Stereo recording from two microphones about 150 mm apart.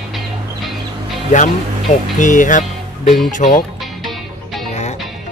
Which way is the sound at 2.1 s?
60° left (ahead or behind).